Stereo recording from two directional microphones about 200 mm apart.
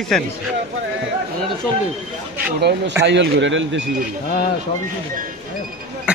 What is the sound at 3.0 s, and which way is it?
Speech, 65° right (ahead or behind).